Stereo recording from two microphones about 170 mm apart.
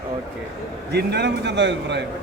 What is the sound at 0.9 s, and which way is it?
A man's voice, 80° right.